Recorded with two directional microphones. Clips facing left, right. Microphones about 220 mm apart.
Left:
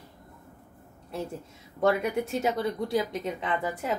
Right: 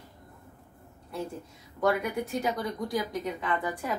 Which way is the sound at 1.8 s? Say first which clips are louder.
Left 2 dB; 25° left (ahead or behind).